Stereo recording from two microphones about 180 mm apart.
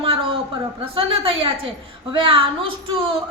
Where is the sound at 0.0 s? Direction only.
30° right (ahead or behind).